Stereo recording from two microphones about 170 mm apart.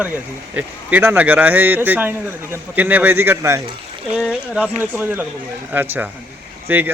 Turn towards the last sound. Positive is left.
turn(degrees=-10)  # may be behind; listen again after turning